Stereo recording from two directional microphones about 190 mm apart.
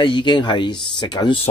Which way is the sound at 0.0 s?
25° left (ahead or behind).